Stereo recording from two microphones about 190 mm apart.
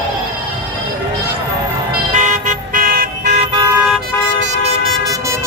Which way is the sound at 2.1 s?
40° right (ahead or behind).